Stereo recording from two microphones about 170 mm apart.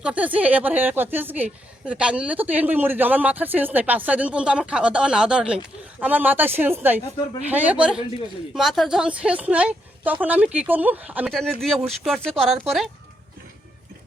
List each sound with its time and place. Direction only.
0.0 s speech: 10° right (ahead or behind)
11.3 s speech: centre (ahead or behind)